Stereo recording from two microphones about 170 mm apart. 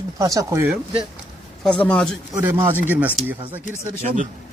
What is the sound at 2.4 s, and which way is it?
Speech, 10° right (ahead or behind).